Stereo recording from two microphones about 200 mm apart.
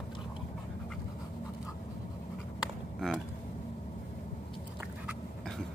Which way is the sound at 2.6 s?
Centre (ahead or behind).